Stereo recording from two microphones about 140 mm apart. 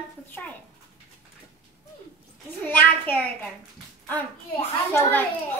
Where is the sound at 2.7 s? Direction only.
15° left (ahead or behind).